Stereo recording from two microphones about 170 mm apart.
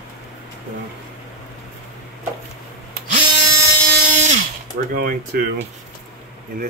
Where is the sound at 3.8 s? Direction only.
60° right (ahead or behind).